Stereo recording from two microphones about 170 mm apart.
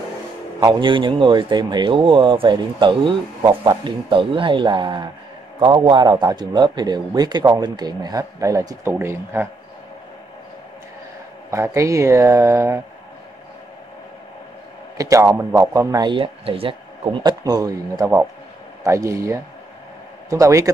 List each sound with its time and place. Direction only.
0.6 s a man's voice: 25° right (ahead or behind)
11.5 s speech: 15° right (ahead or behind)
15.0 s a man's voice: 20° right (ahead or behind)